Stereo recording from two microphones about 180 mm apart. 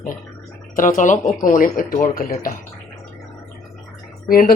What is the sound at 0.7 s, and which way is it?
Speech, 45° left (ahead or behind).